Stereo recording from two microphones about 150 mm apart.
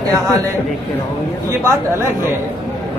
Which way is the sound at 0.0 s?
25° right (ahead or behind).